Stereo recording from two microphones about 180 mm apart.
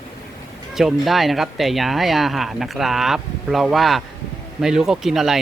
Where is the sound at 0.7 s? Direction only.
Centre (ahead or behind).